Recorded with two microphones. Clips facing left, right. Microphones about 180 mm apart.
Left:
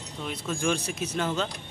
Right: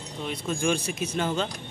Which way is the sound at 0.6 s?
Centre (ahead or behind).